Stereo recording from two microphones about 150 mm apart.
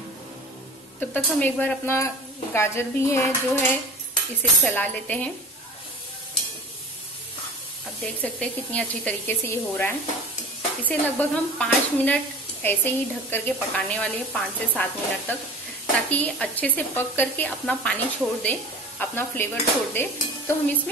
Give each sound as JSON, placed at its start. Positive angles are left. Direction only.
{"t": 1.1, "sound": "speech", "side_deg": 10}
{"t": 8.2, "sound": "speech", "side_deg": 10}
{"t": 19.9, "sound": "stir", "side_deg": 10}